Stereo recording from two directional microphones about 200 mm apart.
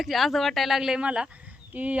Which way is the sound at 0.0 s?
Centre (ahead or behind).